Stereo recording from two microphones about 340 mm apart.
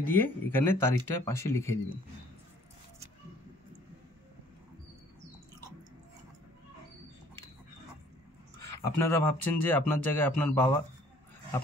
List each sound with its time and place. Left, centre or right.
0.0 s speech: centre
8.7 s speech: centre